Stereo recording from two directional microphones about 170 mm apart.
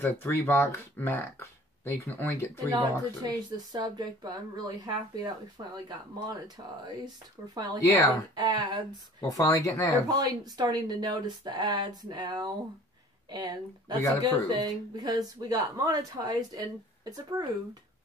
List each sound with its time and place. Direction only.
0.0 s speech: 15° left (ahead or behind)
3.2 s speech: 25° right (ahead or behind)
7.8 s speech: 20° left (ahead or behind)
8.4 s speech: 25° right (ahead or behind)
9.3 s speech: 20° left (ahead or behind)
10.0 s speech: 20° right (ahead or behind)